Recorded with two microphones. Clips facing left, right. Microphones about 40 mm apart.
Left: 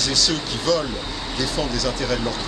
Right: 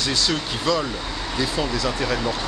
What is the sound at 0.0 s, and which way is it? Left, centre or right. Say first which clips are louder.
Speech: even; right.